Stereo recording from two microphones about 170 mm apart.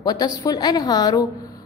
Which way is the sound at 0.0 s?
25° left (ahead or behind).